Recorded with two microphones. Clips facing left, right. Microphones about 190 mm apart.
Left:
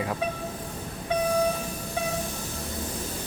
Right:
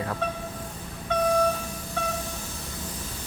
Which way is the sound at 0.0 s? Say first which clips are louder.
Left 1 dB; 10° left (ahead or behind).